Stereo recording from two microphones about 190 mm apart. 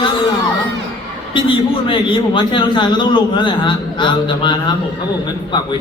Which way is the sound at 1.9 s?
25° left (ahead or behind).